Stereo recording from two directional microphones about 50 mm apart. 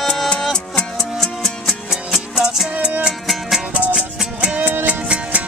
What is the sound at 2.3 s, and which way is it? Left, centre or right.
Music, centre.